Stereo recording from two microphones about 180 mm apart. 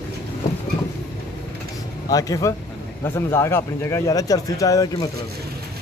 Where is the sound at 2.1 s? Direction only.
20° left (ahead or behind).